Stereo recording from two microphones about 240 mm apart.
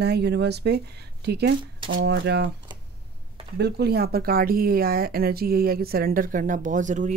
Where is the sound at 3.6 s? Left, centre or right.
Right.